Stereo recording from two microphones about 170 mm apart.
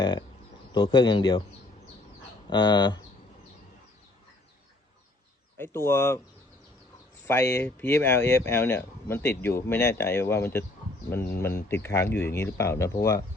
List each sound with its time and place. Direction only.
0.0 s speech: 25° left (ahead or behind)
2.5 s speech: 25° left (ahead or behind)
5.5 s speech: 15° left (ahead or behind)
7.3 s speech: 15° left (ahead or behind)